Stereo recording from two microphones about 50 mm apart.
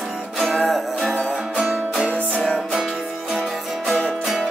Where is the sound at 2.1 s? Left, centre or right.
Left.